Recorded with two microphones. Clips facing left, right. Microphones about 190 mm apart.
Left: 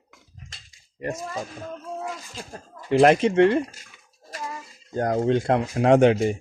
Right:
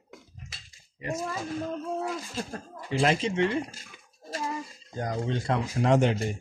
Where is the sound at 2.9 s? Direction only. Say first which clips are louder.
Left 9 dB; 55° left (ahead or behind).